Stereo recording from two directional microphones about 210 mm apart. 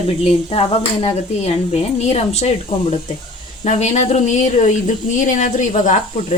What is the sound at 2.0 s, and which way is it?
Speech, 30° left (ahead or behind).